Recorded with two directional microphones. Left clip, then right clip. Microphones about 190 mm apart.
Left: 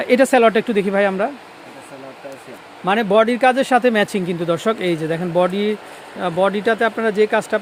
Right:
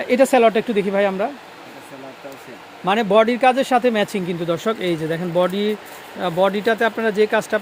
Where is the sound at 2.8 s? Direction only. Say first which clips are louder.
Left 1 dB; 10° left (ahead or behind).